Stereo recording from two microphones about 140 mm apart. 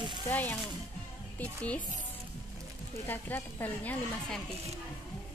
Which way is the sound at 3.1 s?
15° left (ahead or behind).